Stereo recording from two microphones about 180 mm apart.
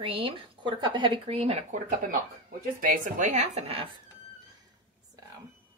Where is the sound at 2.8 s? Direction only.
45° right (ahead or behind).